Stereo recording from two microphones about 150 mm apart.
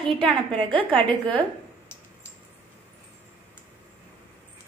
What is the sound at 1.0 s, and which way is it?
Speech, 5° left (ahead or behind).